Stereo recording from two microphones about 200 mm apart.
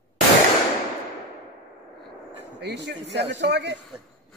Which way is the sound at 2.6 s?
55° right (ahead or behind).